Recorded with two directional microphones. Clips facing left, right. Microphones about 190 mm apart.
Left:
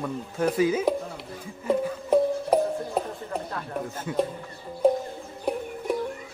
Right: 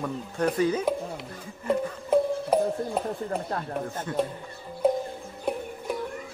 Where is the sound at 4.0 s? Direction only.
5° left (ahead or behind).